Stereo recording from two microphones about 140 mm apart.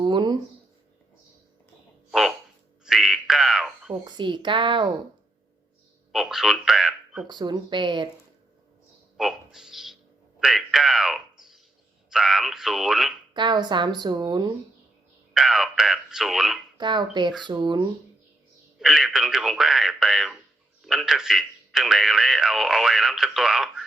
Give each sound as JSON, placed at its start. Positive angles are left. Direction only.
{"t": 0.0, "sound": "a sound", "side_deg": -30}
{"t": 2.0, "sound": "a sound", "side_deg": 0}
{"t": 4.0, "sound": "speech", "side_deg": -35}
{"t": 6.1, "sound": "speech", "side_deg": -5}
{"t": 7.3, "sound": "speech", "side_deg": -30}
{"t": 9.1, "sound": "speech", "side_deg": -5}
{"t": 13.3, "sound": "speech", "side_deg": -35}
{"t": 15.3, "sound": "speech", "side_deg": 0}
{"t": 16.7, "sound": "speech", "side_deg": -30}
{"t": 18.8, "sound": "speech", "side_deg": 0}